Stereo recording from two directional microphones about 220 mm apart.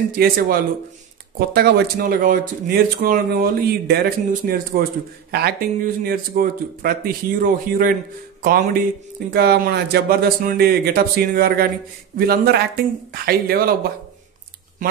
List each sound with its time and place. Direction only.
0.1 s speech: 40° right (ahead or behind)